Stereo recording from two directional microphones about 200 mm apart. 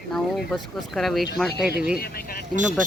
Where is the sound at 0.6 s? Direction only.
Centre (ahead or behind).